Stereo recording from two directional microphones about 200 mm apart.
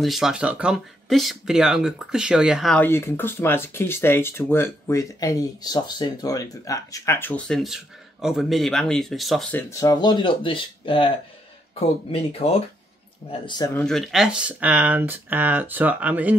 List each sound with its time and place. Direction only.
0.0 s speech: centre (ahead or behind); by 11.1 s 25° left (ahead or behind)
12.1 s speech: 30° left (ahead or behind)
13.7 s speech: centre (ahead or behind)